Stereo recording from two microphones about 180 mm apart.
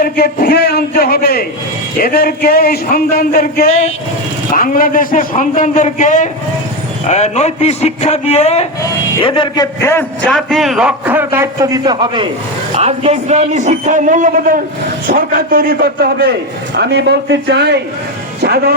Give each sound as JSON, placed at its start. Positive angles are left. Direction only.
{"t": 0.0, "sound": "a man's voice", "side_deg": 60}
{"t": 9.8, "sound": "a man's voice", "side_deg": 15}
{"t": 10.2, "sound": "a man's voice", "side_deg": 0}